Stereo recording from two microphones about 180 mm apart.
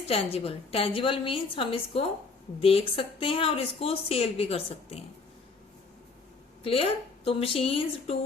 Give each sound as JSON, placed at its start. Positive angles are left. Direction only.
{"t": 0.1, "sound": "speech", "side_deg": 35}
{"t": 6.7, "sound": "speech", "side_deg": 30}